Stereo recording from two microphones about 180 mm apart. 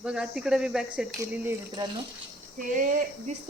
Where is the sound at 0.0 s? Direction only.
5° right (ahead or behind).